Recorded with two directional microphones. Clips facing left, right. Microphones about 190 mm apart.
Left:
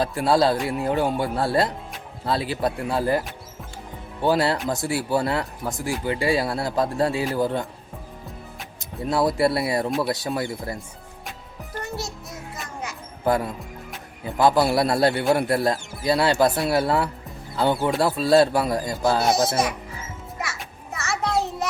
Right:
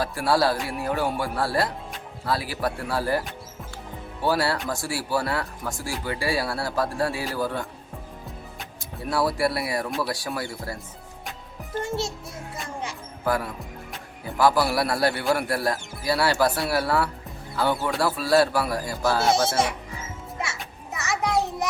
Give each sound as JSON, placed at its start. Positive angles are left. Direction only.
{"t": 0.0, "sound": "speech", "side_deg": 20}
{"t": 9.0, "sound": "speech", "side_deg": 20}
{"t": 11.8, "sound": "a child's voice", "side_deg": -25}
{"t": 12.6, "sound": "music", "side_deg": -30}
{"t": 13.2, "sound": "speech", "side_deg": 20}
{"t": 19.5, "sound": "a child's voice", "side_deg": -25}
{"t": 20.4, "sound": "music", "side_deg": -20}